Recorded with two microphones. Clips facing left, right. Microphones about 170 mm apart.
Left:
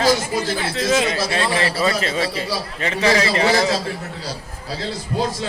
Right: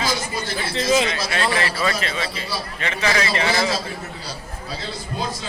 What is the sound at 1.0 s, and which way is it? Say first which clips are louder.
A man's voice: left 2 dB; 35° left (ahead or behind).